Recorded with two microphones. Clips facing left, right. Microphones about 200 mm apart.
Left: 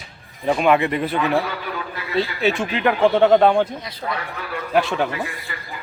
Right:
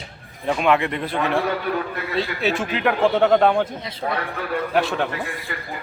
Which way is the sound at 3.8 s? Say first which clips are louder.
Right 1 dB; 25° right (ahead or behind).